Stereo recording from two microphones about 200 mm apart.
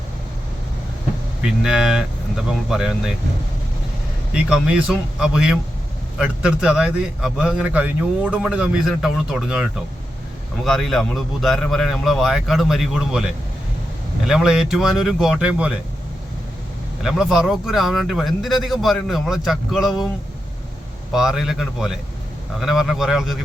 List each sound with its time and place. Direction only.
1.4 s a man's voice: centre (ahead or behind)
4.4 s a man's voice: 5° right (ahead or behind)
17.0 s a man's voice: centre (ahead or behind)
21.1 s a man's voice: 5° right (ahead or behind)